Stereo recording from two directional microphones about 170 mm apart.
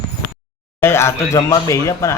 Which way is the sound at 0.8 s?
15° left (ahead or behind).